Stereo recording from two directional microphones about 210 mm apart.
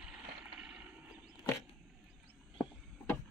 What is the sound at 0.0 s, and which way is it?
Vehicle, 5° right (ahead or behind).